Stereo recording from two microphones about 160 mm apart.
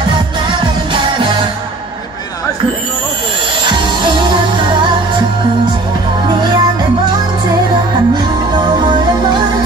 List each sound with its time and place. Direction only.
0.9 s music: 30° right (ahead or behind)
3.6 s music: 30° right (ahead or behind)
6.2 s music: 30° right (ahead or behind)